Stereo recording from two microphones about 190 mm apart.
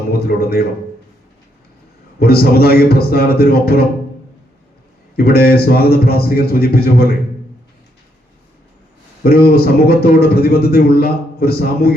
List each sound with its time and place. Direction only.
0.1 s a man's voice: 55° left (ahead or behind)
2.1 s a man's voice: 55° left (ahead or behind)
5.1 s a man's voice: 55° left (ahead or behind)
9.2 s a man's voice: 50° left (ahead or behind)